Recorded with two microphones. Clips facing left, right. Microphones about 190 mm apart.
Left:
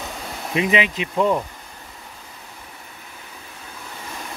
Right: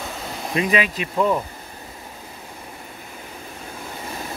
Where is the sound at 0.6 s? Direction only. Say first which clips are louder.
Left 1 dB; 20° left (ahead or behind).